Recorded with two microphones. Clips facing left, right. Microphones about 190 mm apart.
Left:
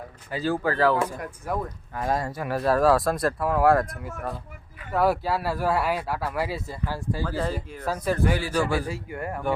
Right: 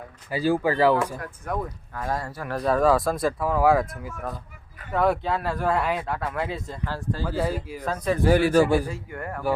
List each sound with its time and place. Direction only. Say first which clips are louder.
0.3 s speech: right 3 dB; 10° right (ahead or behind)
1.5 s speech: even; 5° left (ahead or behind)
2.0 s speech: left 3 dB; 20° left (ahead or behind)
2.6 s speech: even; centre (ahead or behind)
7.3 s speech: right 6 dB; 10° right (ahead or behind)
7.9 s speech: right 1 dB; 5° left (ahead or behind)
8.4 s speech: right 7 dB; 60° right (ahead or behind)
8.6 s speech: right 5 dB; 15° right (ahead or behind)
8.9 s speech: left 2 dB; 15° left (ahead or behind)